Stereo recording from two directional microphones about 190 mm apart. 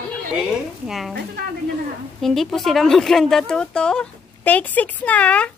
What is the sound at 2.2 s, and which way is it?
Speech, centre (ahead or behind).